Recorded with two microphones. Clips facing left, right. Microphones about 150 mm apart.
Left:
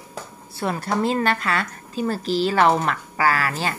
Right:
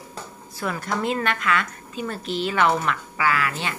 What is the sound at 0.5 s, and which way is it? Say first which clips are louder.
Speech: left 3 dB; 30° left (ahead or behind).